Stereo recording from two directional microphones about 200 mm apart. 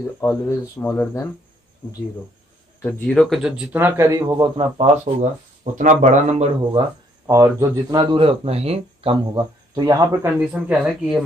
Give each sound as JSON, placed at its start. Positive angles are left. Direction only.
{"t": 0.2, "sound": "speech", "side_deg": 10}
{"t": 2.8, "sound": "speech", "side_deg": 5}
{"t": 7.2, "sound": "speech", "side_deg": -15}
{"t": 10.5, "sound": "speech", "side_deg": -5}